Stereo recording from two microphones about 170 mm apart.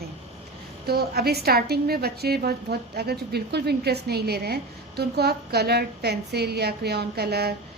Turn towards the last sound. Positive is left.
turn(degrees=-70)  # may be behind; listen again after turning